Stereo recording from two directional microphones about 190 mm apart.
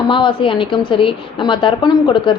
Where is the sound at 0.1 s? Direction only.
25° left (ahead or behind).